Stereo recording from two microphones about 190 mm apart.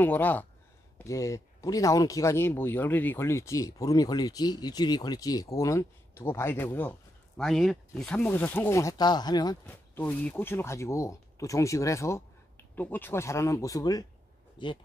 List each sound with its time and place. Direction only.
0.0 s speech: 10° left (ahead or behind)
9.7 s speech: 10° left (ahead or behind)